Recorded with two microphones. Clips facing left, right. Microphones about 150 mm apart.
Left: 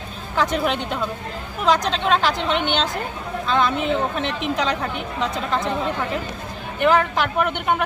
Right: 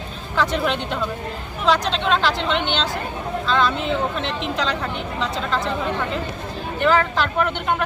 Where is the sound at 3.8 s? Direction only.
55° left (ahead or behind).